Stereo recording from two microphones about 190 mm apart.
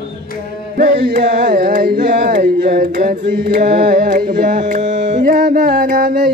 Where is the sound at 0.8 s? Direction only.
45° right (ahead or behind).